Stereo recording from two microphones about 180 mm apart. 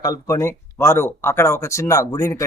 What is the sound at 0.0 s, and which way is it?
Speech, 20° left (ahead or behind).